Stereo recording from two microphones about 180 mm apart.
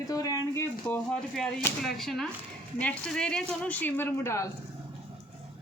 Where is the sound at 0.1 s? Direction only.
20° left (ahead or behind).